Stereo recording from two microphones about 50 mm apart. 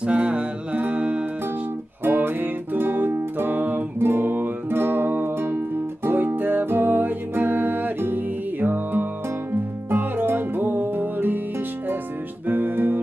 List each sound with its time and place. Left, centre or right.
0.0 s music: right
2.0 s music: right
12.4 s music: right